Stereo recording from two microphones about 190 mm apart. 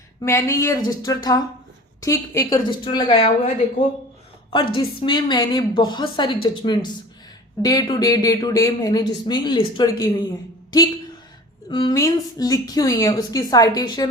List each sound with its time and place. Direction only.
0.2 s speech: 15° left (ahead or behind)
11.7 s speech: 25° left (ahead or behind)